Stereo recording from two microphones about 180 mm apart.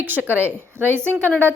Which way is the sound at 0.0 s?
10° right (ahead or behind).